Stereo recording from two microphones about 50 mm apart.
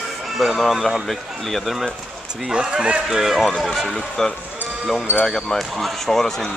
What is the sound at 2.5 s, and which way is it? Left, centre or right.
Speech, centre.